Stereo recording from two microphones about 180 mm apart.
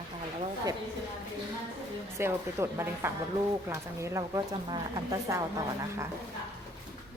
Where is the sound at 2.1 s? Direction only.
15° right (ahead or behind).